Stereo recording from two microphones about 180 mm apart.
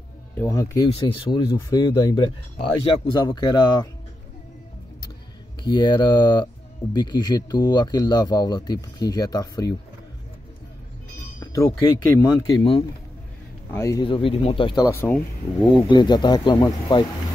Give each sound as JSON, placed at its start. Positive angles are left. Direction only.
{"t": 0.4, "sound": "speech", "side_deg": 20}
{"t": 0.8, "sound": "speech", "side_deg": 30}
{"t": 5.6, "sound": "speech", "side_deg": 25}
{"t": 11.3, "sound": "music", "side_deg": 20}
{"t": 12.2, "sound": "speech", "side_deg": 20}
{"t": 13.7, "sound": "a man's voice", "side_deg": 15}
{"t": 14.0, "sound": "speech", "side_deg": 30}
{"t": 14.9, "sound": "speech", "side_deg": 15}
{"t": 15.6, "sound": "speech", "side_deg": 25}